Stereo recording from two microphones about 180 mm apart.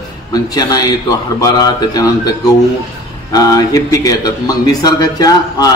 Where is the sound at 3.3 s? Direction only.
20° left (ahead or behind).